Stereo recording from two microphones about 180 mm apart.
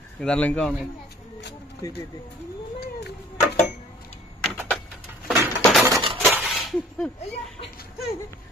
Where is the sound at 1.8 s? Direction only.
20° left (ahead or behind).